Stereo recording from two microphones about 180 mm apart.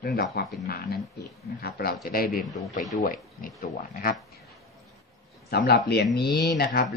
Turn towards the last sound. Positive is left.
turn(degrees=60)  # may be behind; listen again after turning